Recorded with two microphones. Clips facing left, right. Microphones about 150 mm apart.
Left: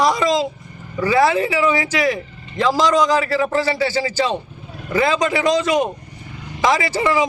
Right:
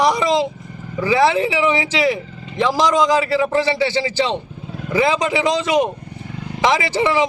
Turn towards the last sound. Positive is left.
turn(degrees=-25)  # may be behind; listen again after turning